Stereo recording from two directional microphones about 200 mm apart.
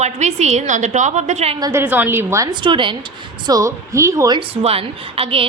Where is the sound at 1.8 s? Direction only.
10° right (ahead or behind).